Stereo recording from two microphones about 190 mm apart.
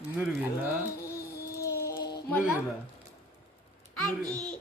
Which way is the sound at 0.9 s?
15° left (ahead or behind).